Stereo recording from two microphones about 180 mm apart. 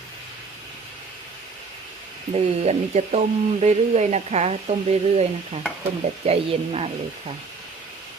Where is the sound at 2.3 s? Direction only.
35° right (ahead or behind).